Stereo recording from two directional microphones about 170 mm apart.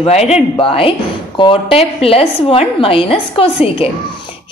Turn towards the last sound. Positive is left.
turn(degrees=35)  # may be behind; listen again after turning